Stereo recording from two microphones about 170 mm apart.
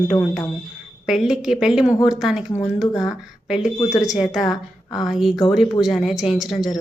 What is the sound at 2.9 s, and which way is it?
Speech, 20° left (ahead or behind).